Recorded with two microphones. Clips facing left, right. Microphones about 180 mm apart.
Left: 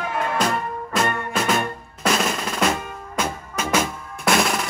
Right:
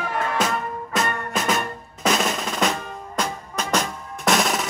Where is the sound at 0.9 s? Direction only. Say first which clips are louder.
Left 2 dB; centre (ahead or behind).